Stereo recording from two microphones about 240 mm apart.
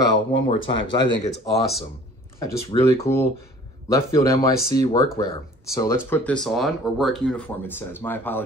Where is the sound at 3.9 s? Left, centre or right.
Centre.